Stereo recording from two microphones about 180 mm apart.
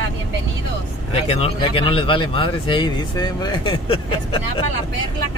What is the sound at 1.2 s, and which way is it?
Speech, 30° left (ahead or behind).